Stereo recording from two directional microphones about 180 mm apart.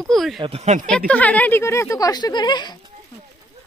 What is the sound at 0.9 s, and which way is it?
Speech, 5° left (ahead or behind).